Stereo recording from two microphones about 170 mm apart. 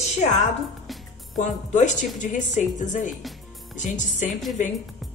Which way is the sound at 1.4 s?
45° left (ahead or behind).